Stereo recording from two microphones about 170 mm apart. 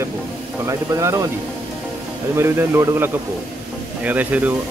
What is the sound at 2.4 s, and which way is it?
Speech, 15° right (ahead or behind).